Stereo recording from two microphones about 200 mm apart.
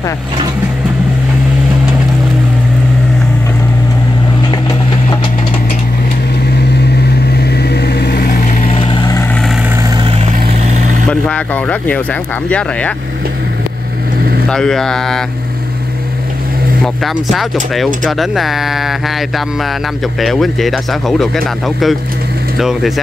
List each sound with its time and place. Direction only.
7.3 s vehicle: 55° left (ahead or behind); by 9.2 s 20° left (ahead or behind)
10.4 s vehicle: 40° right (ahead or behind)
11.1 s speech: 5° left (ahead or behind)
14.5 s speech: 5° left (ahead or behind)
16.8 s speech: centre (ahead or behind)